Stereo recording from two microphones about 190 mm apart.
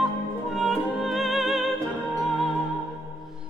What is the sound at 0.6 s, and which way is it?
Music, centre (ahead or behind).